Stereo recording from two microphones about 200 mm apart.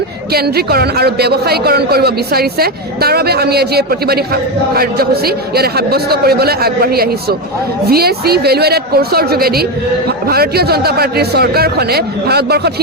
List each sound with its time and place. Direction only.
0.3 s speech: 50° right (ahead or behind)